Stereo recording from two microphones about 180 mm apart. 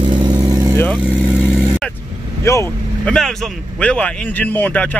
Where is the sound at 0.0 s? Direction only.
25° right (ahead or behind).